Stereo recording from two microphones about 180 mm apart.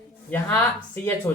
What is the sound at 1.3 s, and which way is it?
Speech, 10° left (ahead or behind).